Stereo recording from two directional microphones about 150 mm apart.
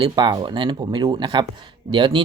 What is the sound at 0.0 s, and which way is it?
Speech, 30° right (ahead or behind).